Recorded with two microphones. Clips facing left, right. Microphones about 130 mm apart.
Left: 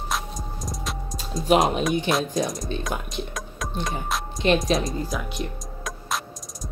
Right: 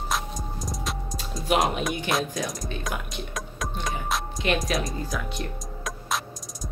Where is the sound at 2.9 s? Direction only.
30° left (ahead or behind).